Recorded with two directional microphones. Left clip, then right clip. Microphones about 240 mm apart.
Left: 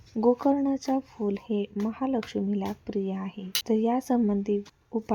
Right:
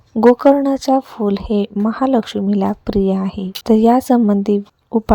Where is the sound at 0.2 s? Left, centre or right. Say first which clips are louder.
Right 13 dB; right.